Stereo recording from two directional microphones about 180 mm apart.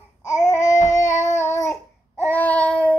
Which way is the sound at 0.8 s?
15° left (ahead or behind).